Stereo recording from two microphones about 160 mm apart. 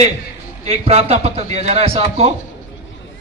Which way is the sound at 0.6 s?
40° right (ahead or behind).